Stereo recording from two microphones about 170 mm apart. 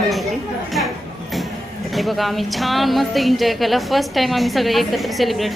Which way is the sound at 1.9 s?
Centre (ahead or behind).